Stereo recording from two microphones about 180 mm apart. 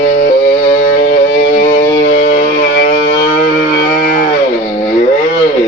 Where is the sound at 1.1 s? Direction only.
50° left (ahead or behind).